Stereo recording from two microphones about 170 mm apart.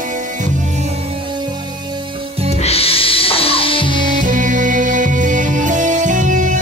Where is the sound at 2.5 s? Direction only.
35° left (ahead or behind).